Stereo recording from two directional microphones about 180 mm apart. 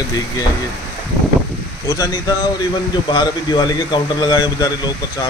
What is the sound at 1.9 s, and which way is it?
A man's voice, 20° left (ahead or behind).